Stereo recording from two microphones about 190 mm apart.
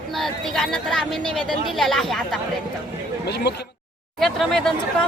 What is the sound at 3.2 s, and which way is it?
Speech, 60° left (ahead or behind).